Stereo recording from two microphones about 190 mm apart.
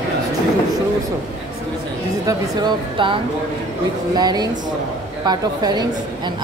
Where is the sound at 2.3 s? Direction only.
25° right (ahead or behind).